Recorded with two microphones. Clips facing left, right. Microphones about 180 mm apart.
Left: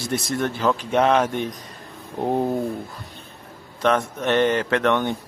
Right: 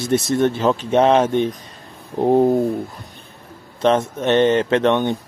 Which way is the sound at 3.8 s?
25° right (ahead or behind).